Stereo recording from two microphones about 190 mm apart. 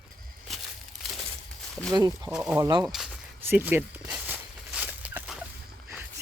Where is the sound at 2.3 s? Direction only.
5° right (ahead or behind).